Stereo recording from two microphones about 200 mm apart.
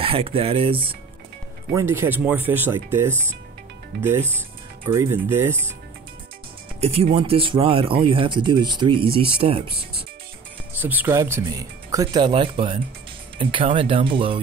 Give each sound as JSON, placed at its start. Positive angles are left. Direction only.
{"t": 0.0, "sound": "speech", "side_deg": -30}
{"t": 1.7, "sound": "speech", "side_deg": -15}
{"t": 4.8, "sound": "speech", "side_deg": -15}
{"t": 6.8, "sound": "speech", "side_deg": -30}
{"t": 10.7, "sound": "speech", "side_deg": -10}